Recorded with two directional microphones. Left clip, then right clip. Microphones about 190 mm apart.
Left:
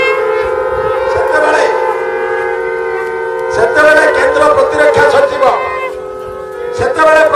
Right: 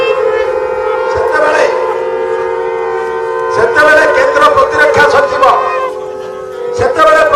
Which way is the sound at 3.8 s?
50° left (ahead or behind).